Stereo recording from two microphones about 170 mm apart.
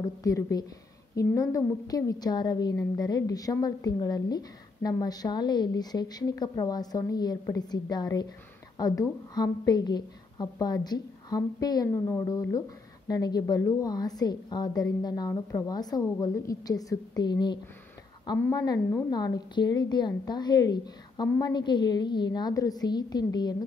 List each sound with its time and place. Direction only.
0.2 s a woman's voice: 20° left (ahead or behind)